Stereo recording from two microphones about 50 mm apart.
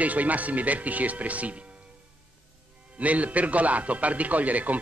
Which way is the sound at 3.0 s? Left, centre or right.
Right.